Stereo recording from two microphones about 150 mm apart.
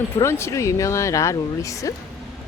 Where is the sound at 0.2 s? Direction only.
15° left (ahead or behind).